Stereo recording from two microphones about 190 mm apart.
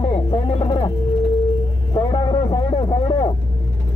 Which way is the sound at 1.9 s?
20° left (ahead or behind).